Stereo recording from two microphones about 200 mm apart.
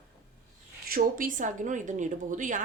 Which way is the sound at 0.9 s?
45° right (ahead or behind).